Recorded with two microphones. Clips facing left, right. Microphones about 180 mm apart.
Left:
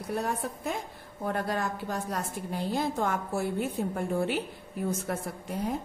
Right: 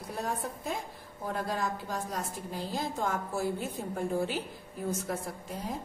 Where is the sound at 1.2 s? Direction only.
65° left (ahead or behind).